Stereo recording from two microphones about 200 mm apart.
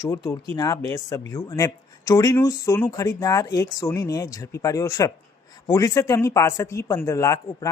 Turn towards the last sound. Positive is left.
turn(degrees=15)  # may be behind; listen again after turning